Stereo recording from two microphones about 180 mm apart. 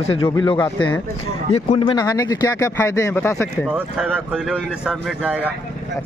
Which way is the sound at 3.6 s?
5° right (ahead or behind).